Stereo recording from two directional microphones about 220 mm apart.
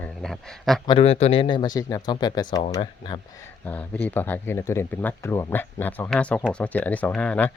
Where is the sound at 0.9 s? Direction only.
25° left (ahead or behind).